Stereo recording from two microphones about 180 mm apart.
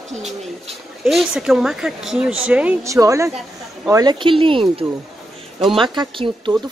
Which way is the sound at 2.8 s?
15° right (ahead or behind).